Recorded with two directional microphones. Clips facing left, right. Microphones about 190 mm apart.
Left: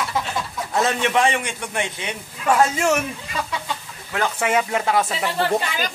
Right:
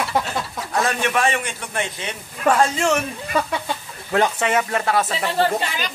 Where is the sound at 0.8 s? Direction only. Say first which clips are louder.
Left 2 dB; 20° left (ahead or behind).